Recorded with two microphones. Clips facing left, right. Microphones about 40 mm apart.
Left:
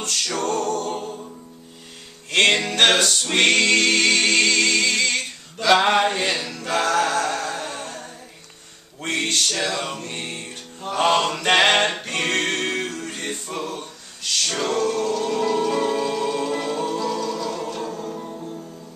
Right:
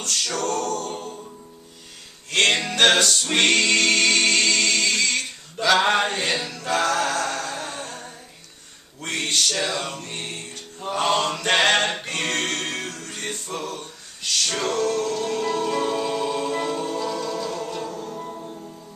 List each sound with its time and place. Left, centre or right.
0.0 s a capella: centre
2.3 s music: centre
5.7 s a sound: centre
6.7 s music: centre
11.0 s mantra: left
12.2 s choir: centre
13.2 s music: centre
14.5 s music: centre
17.9 s music: centre
18.2 s music: centre